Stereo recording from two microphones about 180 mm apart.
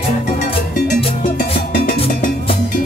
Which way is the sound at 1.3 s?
50° left (ahead or behind).